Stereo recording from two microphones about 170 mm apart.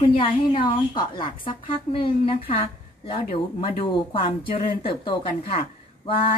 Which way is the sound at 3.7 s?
30° left (ahead or behind).